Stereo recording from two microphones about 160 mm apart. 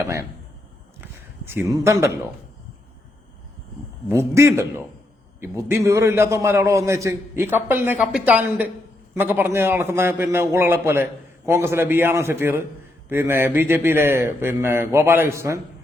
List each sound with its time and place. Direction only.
1.7 s speech: 20° right (ahead or behind)
4.1 s a man's voice: 15° right (ahead or behind)